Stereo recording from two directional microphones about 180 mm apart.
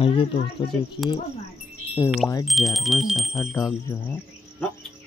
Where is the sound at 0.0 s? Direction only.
30° left (ahead or behind).